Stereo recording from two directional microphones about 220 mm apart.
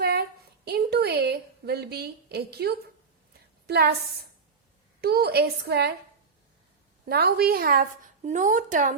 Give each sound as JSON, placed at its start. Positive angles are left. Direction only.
{"t": 0.0, "sound": "a woman's voice", "side_deg": -45}
{"t": 4.9, "sound": "a woman's voice", "side_deg": -45}
{"t": 7.1, "sound": "a woman's voice", "side_deg": -45}